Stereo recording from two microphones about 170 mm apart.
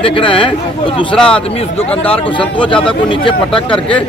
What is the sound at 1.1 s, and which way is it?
Speech, 5° left (ahead or behind).